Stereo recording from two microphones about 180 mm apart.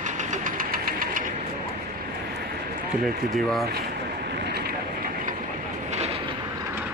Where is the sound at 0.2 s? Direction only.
45° right (ahead or behind).